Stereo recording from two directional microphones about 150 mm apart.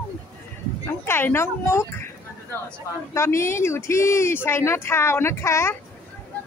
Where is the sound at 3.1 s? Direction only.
20° left (ahead or behind).